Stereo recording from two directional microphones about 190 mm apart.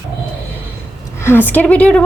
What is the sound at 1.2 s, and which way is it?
Speech, 10° left (ahead or behind).